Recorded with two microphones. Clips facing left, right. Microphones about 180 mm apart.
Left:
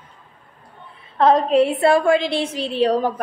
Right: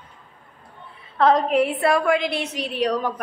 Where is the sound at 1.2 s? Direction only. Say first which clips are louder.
Left 3 dB; 25° left (ahead or behind).